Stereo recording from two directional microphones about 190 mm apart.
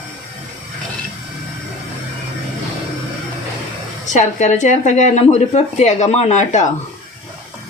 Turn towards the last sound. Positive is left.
turn(degrees=40)  # may be behind; listen again after turning